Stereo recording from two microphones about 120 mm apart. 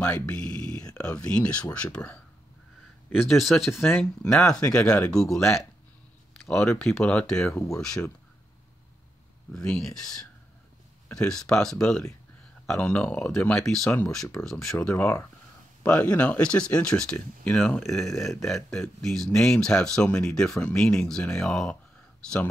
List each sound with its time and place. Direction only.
0.0 s speech: 10° left (ahead or behind)
3.1 s speech: centre (ahead or behind)
7.5 s speech: 25° left (ahead or behind)
7.8 s speech: 5° left (ahead or behind)
9.5 s speech: 5° left (ahead or behind)
11.1 s speech: 5° left (ahead or behind)